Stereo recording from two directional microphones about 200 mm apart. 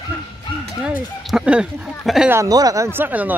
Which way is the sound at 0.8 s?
5° right (ahead or behind).